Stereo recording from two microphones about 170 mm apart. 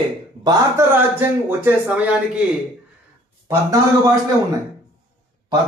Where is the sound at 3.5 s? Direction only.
20° right (ahead or behind).